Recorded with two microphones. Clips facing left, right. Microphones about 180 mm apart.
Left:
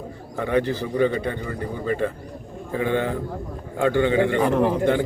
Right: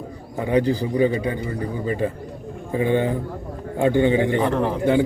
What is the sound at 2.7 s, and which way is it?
Speech, 15° right (ahead or behind).